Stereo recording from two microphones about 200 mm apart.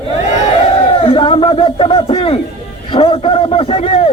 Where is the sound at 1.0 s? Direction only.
25° left (ahead or behind).